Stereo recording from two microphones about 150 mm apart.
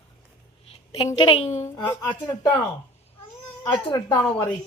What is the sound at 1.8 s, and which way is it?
Speech, 25° left (ahead or behind).